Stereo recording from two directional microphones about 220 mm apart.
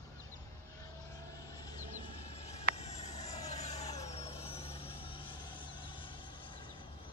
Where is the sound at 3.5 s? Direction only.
30° left (ahead or behind).